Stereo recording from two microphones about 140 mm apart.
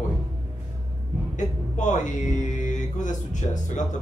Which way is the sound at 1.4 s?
60° left (ahead or behind).